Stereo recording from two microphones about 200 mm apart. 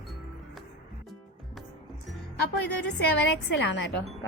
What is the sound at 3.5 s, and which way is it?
Speech, 60° left (ahead or behind).